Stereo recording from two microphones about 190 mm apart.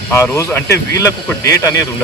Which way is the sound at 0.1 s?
15° left (ahead or behind).